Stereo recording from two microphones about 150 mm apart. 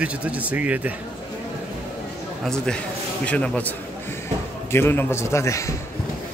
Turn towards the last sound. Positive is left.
turn(degrees=20)  # may be behind; listen again after turning